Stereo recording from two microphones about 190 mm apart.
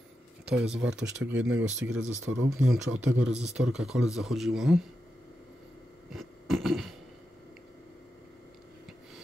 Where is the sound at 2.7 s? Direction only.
90° right.